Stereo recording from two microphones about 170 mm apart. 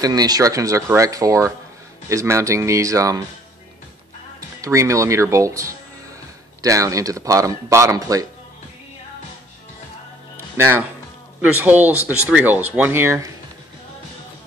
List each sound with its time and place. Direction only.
0.0 s speech: 20° right (ahead or behind)
4.6 s speech: 20° right (ahead or behind)
10.6 s speech: 10° right (ahead or behind)